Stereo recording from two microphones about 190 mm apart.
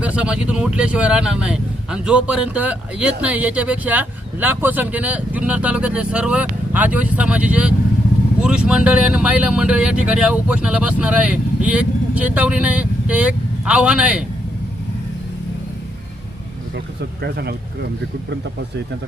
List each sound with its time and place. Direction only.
0.0 s speech: 5° right (ahead or behind)
17.2 s speech: 55° right (ahead or behind)